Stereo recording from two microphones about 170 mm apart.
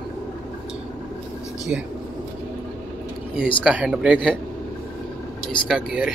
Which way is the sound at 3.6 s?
5° right (ahead or behind).